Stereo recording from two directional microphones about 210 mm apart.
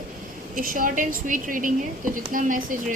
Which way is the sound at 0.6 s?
40° right (ahead or behind).